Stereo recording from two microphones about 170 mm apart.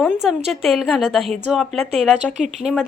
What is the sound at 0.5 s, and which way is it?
A woman's voice, centre (ahead or behind).